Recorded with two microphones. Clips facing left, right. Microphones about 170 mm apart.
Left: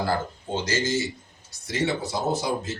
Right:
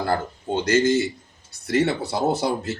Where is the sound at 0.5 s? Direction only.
60° right (ahead or behind).